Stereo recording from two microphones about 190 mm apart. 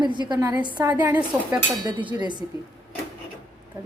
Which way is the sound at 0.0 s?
25° right (ahead or behind).